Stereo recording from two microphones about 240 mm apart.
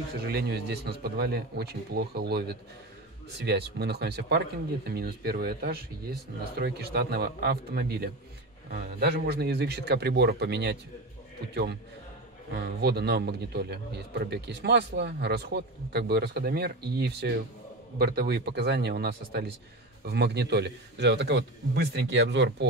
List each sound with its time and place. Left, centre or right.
0.2 s a man's voice: right